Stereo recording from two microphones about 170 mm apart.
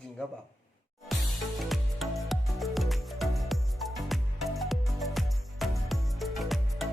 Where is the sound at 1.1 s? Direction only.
Centre (ahead or behind).